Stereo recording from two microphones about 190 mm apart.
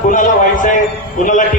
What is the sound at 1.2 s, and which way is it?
Speech, 45° left (ahead or behind).